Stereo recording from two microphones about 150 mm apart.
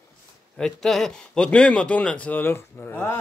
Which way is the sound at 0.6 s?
5° left (ahead or behind).